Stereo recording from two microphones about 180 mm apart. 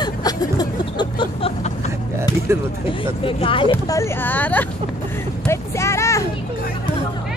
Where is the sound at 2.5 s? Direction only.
15° right (ahead or behind).